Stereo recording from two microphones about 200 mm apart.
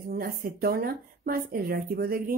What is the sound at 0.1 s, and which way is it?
Speech, 45° right (ahead or behind).